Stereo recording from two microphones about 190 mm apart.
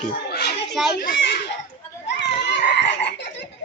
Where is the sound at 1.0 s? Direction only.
50° left (ahead or behind).